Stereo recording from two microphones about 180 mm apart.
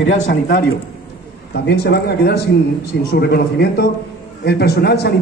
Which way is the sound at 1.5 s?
65° left (ahead or behind).